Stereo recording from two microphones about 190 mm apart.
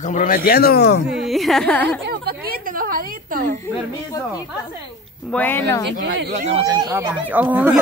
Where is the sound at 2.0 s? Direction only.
55° right (ahead or behind).